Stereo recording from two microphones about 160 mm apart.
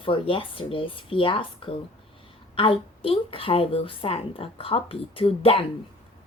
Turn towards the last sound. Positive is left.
turn(degrees=35)  # may be behind; listen again after turning